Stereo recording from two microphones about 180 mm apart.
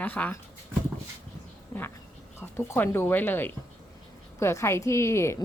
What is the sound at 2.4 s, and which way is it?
A woman's voice, 10° left (ahead or behind).